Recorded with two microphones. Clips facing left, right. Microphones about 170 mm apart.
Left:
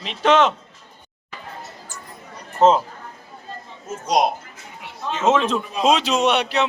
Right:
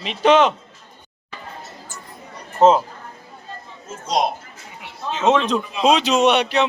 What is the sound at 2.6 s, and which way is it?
Speech, centre (ahead or behind).